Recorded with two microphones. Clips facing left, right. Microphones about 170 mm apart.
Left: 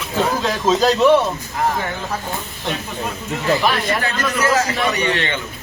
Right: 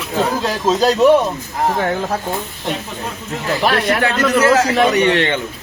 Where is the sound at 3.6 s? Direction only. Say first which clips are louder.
Right 4 dB; 70° right (ahead or behind).